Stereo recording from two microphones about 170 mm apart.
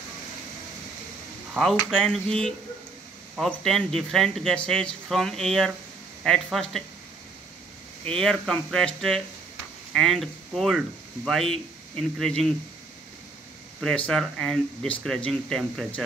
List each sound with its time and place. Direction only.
1.5 s speech: centre (ahead or behind)
8.1 s speech: 5° left (ahead or behind)
13.7 s speech: 5° left (ahead or behind)